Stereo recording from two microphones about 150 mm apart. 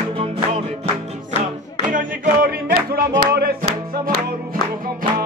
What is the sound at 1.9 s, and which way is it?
Music, 60° right (ahead or behind).